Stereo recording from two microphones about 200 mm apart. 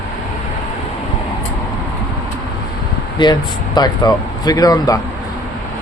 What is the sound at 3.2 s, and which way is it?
Speech, 20° left (ahead or behind).